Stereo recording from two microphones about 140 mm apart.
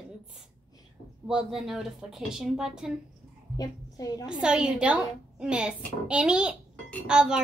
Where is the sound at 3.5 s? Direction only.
25° left (ahead or behind).